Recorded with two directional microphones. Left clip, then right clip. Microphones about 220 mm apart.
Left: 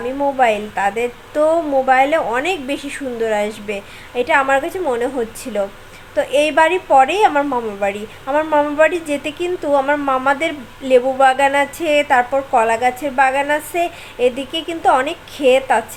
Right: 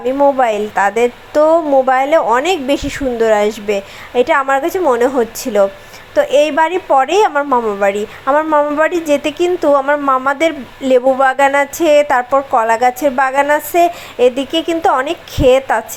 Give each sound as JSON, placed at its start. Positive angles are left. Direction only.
{"t": 0.3, "sound": "a woman's voice", "side_deg": -20}